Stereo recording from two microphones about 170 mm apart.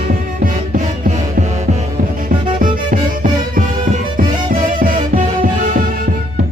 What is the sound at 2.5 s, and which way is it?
Music, 55° right (ahead or behind).